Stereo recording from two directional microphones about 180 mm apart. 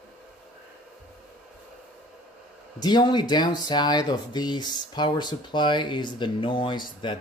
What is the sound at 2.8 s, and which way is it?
Speech, 25° left (ahead or behind).